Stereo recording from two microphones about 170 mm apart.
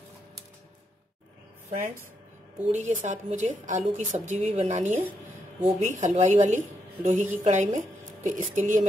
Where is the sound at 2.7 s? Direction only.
45° right (ahead or behind).